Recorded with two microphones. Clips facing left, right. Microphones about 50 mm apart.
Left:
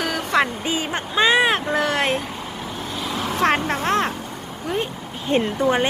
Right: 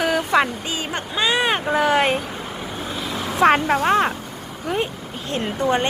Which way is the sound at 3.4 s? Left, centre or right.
Centre.